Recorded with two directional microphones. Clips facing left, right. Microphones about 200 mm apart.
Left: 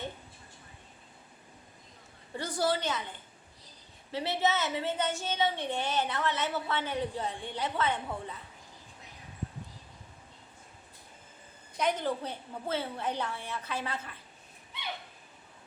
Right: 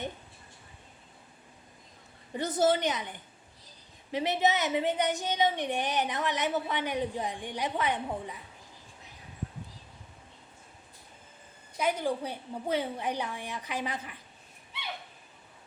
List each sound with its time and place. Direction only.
2.3 s a woman's voice: 20° right (ahead or behind)
11.8 s a woman's voice: 10° right (ahead or behind)